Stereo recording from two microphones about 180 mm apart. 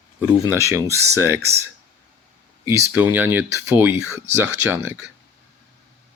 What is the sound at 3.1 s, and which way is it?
Speech, 10° right (ahead or behind).